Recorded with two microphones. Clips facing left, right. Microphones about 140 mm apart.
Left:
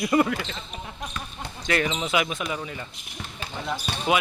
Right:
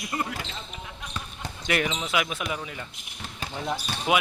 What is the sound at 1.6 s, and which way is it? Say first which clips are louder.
Speech: left 2 dB; 15° right (ahead or behind).